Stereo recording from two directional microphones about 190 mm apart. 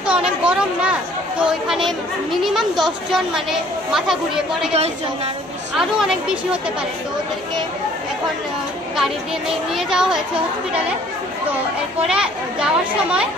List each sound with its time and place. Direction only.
0.0 s a sound: 5° right (ahead or behind)
1.4 s speech: 5° right (ahead or behind)
4.7 s a woman's voice: 35° right (ahead or behind)
5.8 s speech: 5° right (ahead or behind)
8.9 s speech: centre (ahead or behind)
12.1 s speech: 5° right (ahead or behind)